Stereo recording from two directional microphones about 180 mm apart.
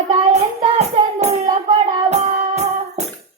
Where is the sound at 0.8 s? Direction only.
35° right (ahead or behind).